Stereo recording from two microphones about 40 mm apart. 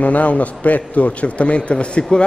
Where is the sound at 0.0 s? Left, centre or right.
Left.